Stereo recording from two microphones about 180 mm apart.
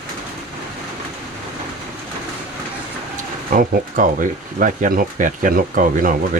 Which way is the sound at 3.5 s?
50° right (ahead or behind).